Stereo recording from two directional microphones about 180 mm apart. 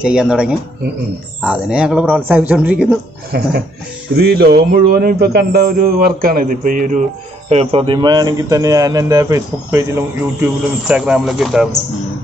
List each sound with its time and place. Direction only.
0.0 s a man's voice: 5° right (ahead or behind)
3.3 s speech: 60° right (ahead or behind)
7.4 s speech: 35° right (ahead or behind); by 11.7 s centre (ahead or behind)